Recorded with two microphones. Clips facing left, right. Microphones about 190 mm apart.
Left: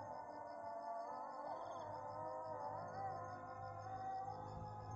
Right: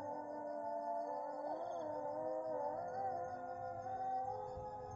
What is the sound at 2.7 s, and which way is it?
Music, 45° right (ahead or behind).